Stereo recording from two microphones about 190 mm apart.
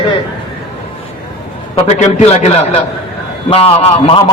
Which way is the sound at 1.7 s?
40° left (ahead or behind).